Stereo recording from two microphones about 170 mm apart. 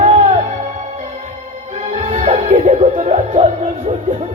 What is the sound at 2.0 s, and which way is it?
Music, 45° right (ahead or behind).